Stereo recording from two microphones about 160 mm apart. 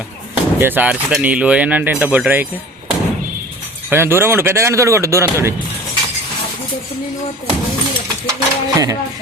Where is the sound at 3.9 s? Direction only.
15° right (ahead or behind).